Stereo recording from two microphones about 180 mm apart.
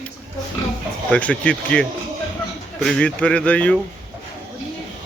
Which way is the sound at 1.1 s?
5° left (ahead or behind).